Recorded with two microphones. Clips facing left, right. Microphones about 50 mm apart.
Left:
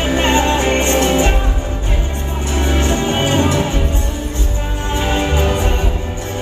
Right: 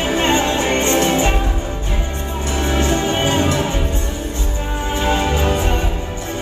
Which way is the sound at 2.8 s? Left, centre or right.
Left.